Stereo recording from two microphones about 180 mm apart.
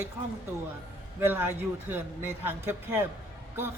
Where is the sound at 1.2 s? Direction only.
10° right (ahead or behind).